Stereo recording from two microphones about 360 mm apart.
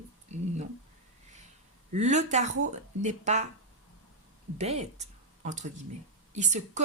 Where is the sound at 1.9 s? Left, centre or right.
Centre.